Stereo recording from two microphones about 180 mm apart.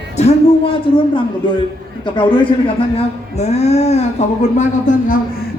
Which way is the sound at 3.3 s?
35° left (ahead or behind).